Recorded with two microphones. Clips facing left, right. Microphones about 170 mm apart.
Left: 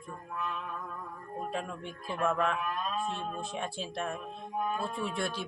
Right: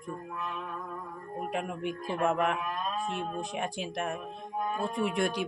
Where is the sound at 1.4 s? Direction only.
15° right (ahead or behind).